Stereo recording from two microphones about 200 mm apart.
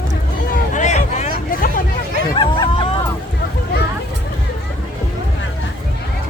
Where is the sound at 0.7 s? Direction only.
35° left (ahead or behind).